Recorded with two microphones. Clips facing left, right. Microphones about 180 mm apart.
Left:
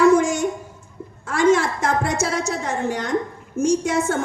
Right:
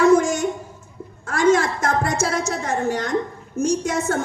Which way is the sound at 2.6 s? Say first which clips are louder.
Right 1 dB; 40° right (ahead or behind).